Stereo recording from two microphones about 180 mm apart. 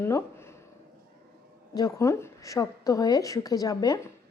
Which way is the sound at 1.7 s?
20° left (ahead or behind).